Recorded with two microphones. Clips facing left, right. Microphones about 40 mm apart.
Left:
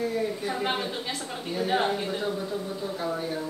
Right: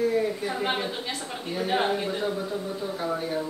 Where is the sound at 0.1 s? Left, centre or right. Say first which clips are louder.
Right 3 dB; centre.